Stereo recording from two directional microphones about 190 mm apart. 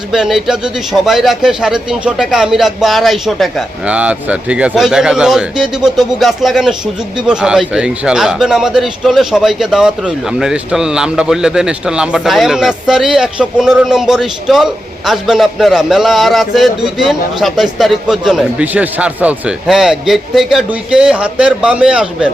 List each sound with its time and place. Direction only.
0.1 s speech: centre (ahead or behind)